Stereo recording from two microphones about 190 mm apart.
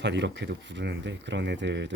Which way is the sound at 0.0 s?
70° right (ahead or behind).